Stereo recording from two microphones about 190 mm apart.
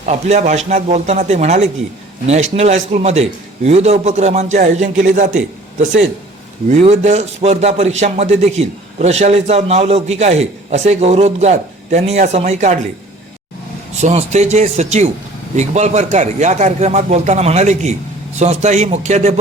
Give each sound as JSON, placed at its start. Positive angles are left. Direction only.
{"t": 0.0, "sound": "a man's voice", "side_deg": -35}
{"t": 6.7, "sound": "a man's voice", "side_deg": -40}
{"t": 14.0, "sound": "a man's voice", "side_deg": -35}